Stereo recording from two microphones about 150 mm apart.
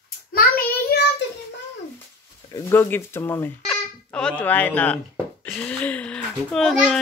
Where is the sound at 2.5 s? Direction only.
25° left (ahead or behind).